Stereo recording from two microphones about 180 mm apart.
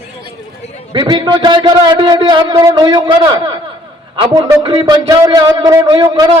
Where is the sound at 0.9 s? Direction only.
25° right (ahead or behind).